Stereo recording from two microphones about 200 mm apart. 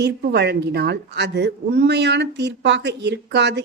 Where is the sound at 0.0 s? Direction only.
55° right (ahead or behind).